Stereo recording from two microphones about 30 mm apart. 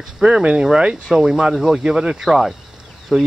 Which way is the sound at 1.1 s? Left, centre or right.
Centre.